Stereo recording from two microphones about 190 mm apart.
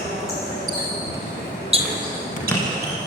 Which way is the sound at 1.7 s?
30° right (ahead or behind).